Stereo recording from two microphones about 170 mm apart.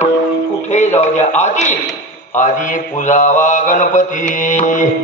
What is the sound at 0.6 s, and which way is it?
A man's voice, 45° left (ahead or behind).